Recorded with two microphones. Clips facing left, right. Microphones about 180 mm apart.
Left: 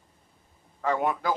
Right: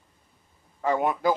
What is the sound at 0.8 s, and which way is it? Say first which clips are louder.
Speech: right 2 dB; 15° right (ahead or behind).